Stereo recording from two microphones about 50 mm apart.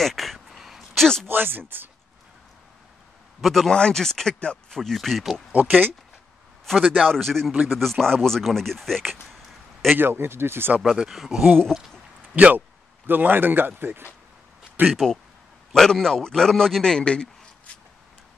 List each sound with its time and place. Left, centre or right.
0.0 s a sound: centre
1.2 s speech: right
3.3 s a man's voice: centre
3.7 s a man's voice: centre
4.7 s speech: centre
5.5 s speech: right
6.9 s a man's voice: centre
9.9 s speech: right
10.8 s speech: centre
11.7 s a man's voice: centre
12.5 s speech: right
14.9 s a man's voice: centre